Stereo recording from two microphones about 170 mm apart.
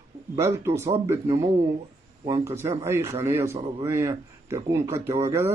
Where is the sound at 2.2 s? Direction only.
20° right (ahead or behind).